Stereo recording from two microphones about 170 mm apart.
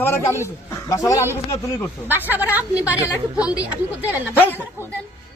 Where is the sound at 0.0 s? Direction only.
15° left (ahead or behind).